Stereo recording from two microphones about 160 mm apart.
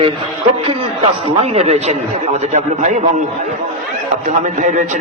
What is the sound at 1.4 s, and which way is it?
A man's voice, 40° right (ahead or behind).